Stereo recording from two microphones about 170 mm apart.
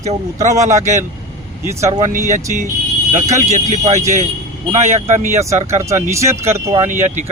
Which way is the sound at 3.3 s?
45° right (ahead or behind).